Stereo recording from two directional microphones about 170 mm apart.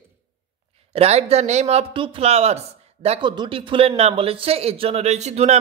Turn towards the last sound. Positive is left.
turn(degrees=-40)  # may be behind; listen again after turning